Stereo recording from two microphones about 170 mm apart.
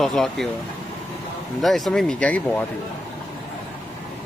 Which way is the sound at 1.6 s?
Centre (ahead or behind).